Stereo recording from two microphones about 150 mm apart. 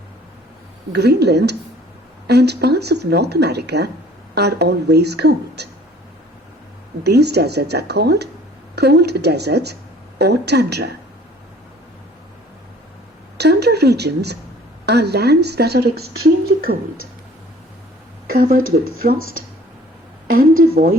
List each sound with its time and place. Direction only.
0.9 s speech: 90° right
7.0 s speech: 90° right
13.3 s speech: 90° right
18.3 s speech: 70° right (ahead or behind)
19.2 s speech: 90° left
20.3 s speech: 70° right (ahead or behind)